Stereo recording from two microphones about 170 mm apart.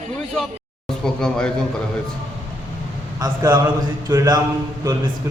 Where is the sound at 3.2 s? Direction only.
25° right (ahead or behind).